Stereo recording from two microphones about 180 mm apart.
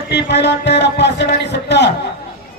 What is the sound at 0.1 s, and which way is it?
Speech, 70° left (ahead or behind).